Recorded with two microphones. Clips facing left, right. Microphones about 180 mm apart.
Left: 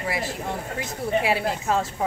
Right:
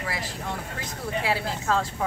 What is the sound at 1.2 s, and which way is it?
Speech, 20° left (ahead or behind).